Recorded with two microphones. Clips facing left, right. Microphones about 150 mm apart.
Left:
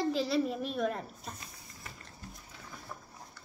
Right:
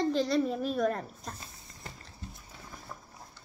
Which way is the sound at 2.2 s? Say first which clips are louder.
Right 3 dB; 25° right (ahead or behind).